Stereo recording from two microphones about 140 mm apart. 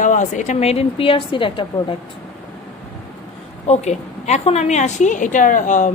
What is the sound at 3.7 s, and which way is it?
A woman's voice, 55° left (ahead or behind).